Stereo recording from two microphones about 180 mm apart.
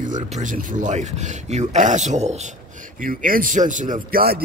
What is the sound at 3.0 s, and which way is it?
Speech, 50° right (ahead or behind).